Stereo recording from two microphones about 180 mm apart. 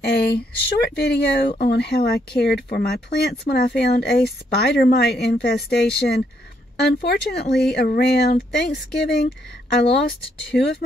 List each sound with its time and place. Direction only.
0.0 s speech: 65° left (ahead or behind)